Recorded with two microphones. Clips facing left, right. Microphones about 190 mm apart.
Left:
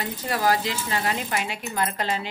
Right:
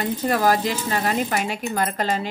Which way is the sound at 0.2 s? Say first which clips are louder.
Right 3 dB; 50° right (ahead or behind).